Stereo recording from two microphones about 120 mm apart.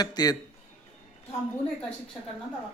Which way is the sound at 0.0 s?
35° left (ahead or behind).